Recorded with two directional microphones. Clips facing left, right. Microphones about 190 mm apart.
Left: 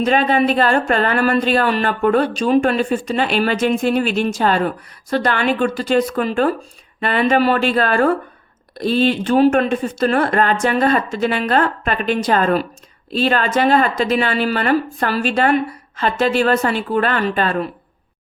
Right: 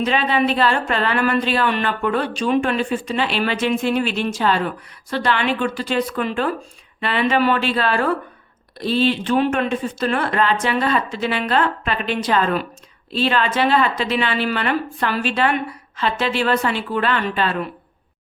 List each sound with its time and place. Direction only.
0.0 s speech: 45° left (ahead or behind)